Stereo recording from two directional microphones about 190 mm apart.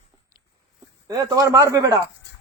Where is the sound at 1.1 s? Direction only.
20° right (ahead or behind).